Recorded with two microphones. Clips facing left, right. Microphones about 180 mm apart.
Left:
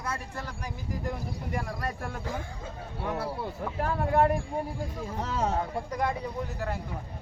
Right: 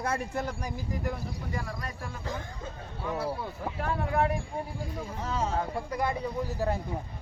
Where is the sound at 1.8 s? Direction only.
55° left (ahead or behind).